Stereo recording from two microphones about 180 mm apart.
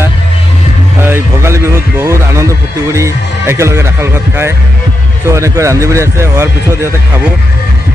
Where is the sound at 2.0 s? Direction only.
15° right (ahead or behind).